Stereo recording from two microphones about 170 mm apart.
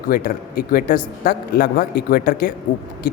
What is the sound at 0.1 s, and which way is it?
A man's voice, 60° left (ahead or behind).